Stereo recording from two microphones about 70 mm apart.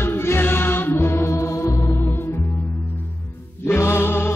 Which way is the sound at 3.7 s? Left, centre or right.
Left.